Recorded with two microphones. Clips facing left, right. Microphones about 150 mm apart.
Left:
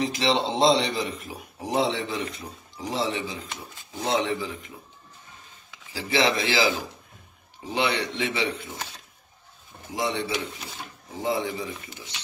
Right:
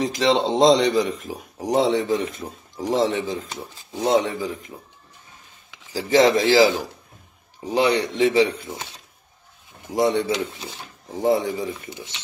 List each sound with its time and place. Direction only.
0.0 s a man's voice: 40° right (ahead or behind)
5.9 s a man's voice: 40° right (ahead or behind)
7.6 s a man's voice: 40° right (ahead or behind)
9.9 s speech: 45° right (ahead or behind)
11.9 s speech: 20° right (ahead or behind)